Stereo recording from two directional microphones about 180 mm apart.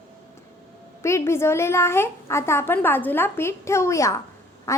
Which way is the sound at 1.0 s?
15° left (ahead or behind).